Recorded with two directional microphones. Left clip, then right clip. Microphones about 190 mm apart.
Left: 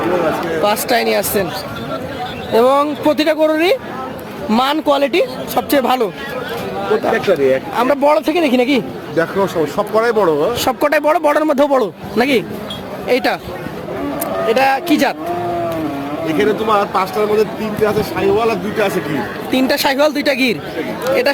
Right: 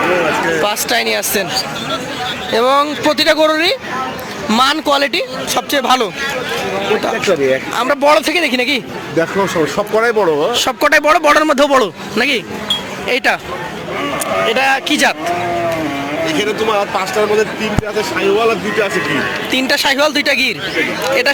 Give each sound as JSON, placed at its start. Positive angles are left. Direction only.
{"t": 0.6, "sound": "speech", "side_deg": 5}
{"t": 2.5, "sound": "speech", "side_deg": 5}
{"t": 7.3, "sound": "speech", "side_deg": -30}
{"t": 7.8, "sound": "speech", "side_deg": 0}
{"t": 9.1, "sound": "speech", "side_deg": -30}
{"t": 10.6, "sound": "speech", "side_deg": 5}
{"t": 13.1, "sound": "speech", "side_deg": -5}
{"t": 14.5, "sound": "speech", "side_deg": 0}
{"t": 16.2, "sound": "speech", "side_deg": 50}
{"t": 19.5, "sound": "speech", "side_deg": 10}